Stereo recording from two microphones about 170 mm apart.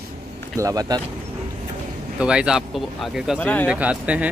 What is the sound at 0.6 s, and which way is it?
Speech, 20° right (ahead or behind).